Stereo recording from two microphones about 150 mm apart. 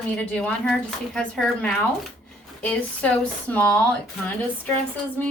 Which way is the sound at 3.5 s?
10° left (ahead or behind).